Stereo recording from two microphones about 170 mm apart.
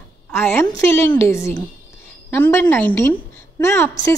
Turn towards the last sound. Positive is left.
turn(degrees=15)  # may be behind; listen again after turning